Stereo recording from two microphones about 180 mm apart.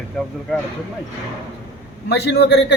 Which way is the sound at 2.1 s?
75° left (ahead or behind).